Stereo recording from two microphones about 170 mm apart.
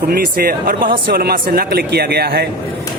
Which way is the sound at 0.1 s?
65° right (ahead or behind).